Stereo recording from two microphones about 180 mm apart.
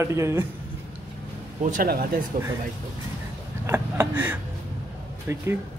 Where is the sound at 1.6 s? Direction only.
50° right (ahead or behind).